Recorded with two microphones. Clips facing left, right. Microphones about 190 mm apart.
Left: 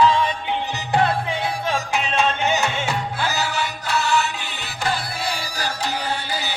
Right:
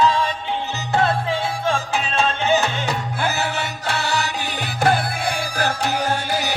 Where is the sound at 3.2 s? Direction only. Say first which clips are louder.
Right 3 dB; 60° right (ahead or behind).